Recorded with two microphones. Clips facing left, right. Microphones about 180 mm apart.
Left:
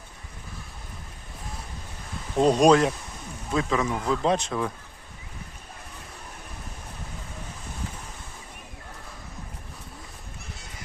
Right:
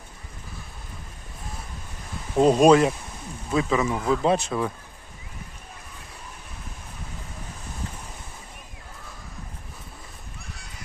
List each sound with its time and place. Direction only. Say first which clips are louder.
2.4 s speech: right 2 dB; 5° right (ahead or behind)